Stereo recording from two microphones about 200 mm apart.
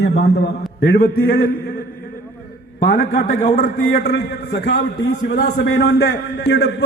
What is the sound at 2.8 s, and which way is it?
A man's voice, 50° left (ahead or behind).